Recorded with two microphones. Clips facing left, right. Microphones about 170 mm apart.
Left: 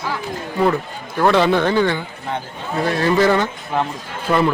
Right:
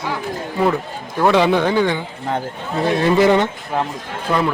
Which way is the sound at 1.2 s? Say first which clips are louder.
Even; 10° right (ahead or behind).